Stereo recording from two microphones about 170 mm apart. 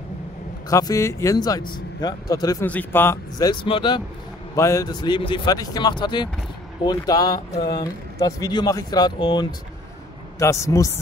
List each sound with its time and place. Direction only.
0.7 s speech: 20° left (ahead or behind)
2.6 s speech: 10° left (ahead or behind); by 4.0 s 30° left (ahead or behind)
4.6 s speech: 20° left (ahead or behind)